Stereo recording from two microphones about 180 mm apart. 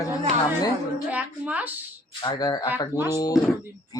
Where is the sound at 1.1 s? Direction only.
10° right (ahead or behind).